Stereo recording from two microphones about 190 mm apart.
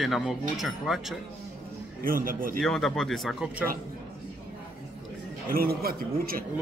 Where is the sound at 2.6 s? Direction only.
Centre (ahead or behind).